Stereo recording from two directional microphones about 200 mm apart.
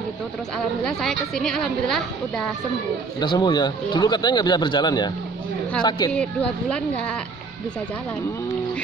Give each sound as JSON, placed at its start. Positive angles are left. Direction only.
{"t": 0.8, "sound": "a woman's voice", "side_deg": 0}
{"t": 3.2, "sound": "speech", "side_deg": 20}
{"t": 6.1, "sound": "a woman's voice", "side_deg": 5}